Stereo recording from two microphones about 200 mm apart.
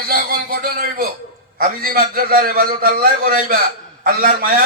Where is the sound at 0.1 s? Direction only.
45° right (ahead or behind).